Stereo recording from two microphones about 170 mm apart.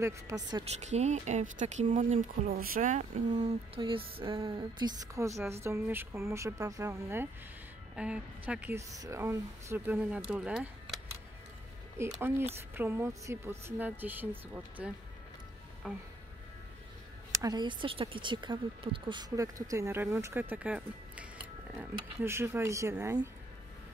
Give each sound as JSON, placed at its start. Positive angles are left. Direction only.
{"t": 0.0, "sound": "speech", "side_deg": -20}
{"t": 0.8, "sound": "speech", "side_deg": -45}
{"t": 3.3, "sound": "music", "side_deg": -35}
{"t": 5.5, "sound": "speech", "side_deg": -15}
{"t": 7.9, "sound": "speech", "side_deg": -5}
{"t": 12.2, "sound": "speech", "side_deg": -15}
{"t": 15.8, "sound": "music", "side_deg": -5}
{"t": 17.3, "sound": "speech", "side_deg": -20}